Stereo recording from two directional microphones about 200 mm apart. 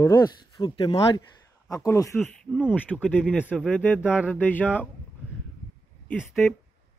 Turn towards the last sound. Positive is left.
turn(degrees=0)  # may be behind; listen again after turning